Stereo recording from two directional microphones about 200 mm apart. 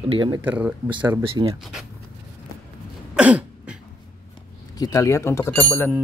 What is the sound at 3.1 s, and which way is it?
Cough, 5° right (ahead or behind).